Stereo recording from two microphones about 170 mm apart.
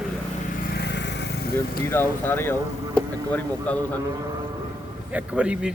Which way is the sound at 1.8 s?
15° left (ahead or behind).